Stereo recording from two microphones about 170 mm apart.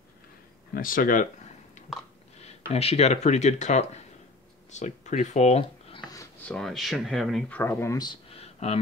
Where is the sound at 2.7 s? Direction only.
35° left (ahead or behind).